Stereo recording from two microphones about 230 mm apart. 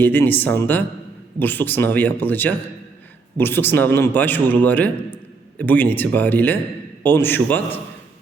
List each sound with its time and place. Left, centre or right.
0.0 s a man's voice: centre